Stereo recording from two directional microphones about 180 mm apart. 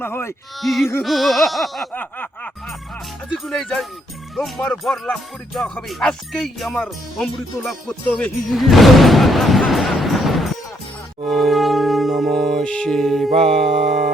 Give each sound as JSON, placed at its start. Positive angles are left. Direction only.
{"t": 0.0, "sound": "speech", "side_deg": 15}
{"t": 0.6, "sound": "speech", "side_deg": 0}
{"t": 1.0, "sound": "music", "side_deg": 0}
{"t": 3.4, "sound": "speech", "side_deg": 0}
{"t": 11.3, "sound": "music", "side_deg": 0}
{"t": 13.7, "sound": "music", "side_deg": -40}